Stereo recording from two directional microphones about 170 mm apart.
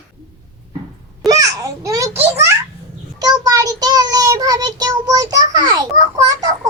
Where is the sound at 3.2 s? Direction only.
20° right (ahead or behind).